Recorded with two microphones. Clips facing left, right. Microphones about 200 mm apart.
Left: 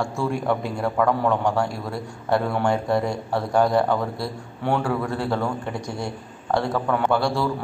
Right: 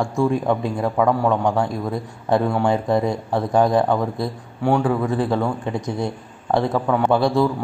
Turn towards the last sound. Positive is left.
turn(degrees=-20)  # may be behind; listen again after turning